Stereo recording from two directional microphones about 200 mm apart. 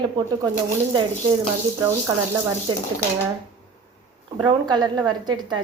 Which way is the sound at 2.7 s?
25° right (ahead or behind).